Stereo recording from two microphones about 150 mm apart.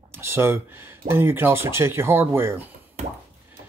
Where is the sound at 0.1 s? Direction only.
15° right (ahead or behind).